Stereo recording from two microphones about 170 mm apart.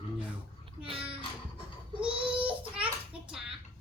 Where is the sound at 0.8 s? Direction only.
35° right (ahead or behind).